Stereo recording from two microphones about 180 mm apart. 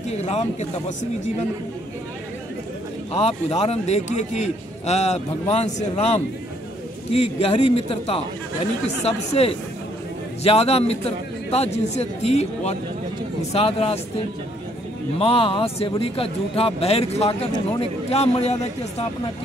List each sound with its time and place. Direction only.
0.1 s a man's voice: 35° left (ahead or behind)
3.1 s a man's voice: 35° left (ahead or behind)